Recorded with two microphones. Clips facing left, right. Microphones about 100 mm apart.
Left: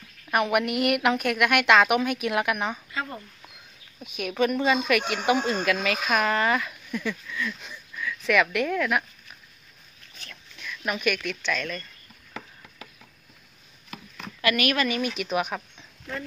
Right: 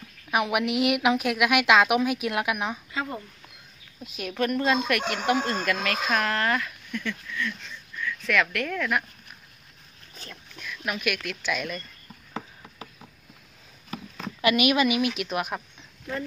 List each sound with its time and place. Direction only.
0.3 s speech: centre (ahead or behind)
2.9 s a sound: 20° right (ahead or behind)
4.2 s speech: centre (ahead or behind)
10.6 s speech: centre (ahead or behind)
14.4 s a woman's voice: 15° right (ahead or behind); by 15.6 s centre (ahead or behind)